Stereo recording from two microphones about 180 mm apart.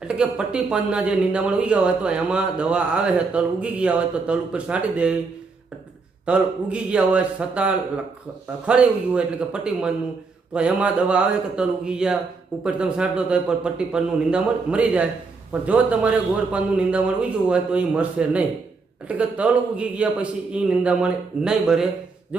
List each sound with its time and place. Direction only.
0.2 s speech: 5° right (ahead or behind)
6.2 s a man's voice: 5° right (ahead or behind)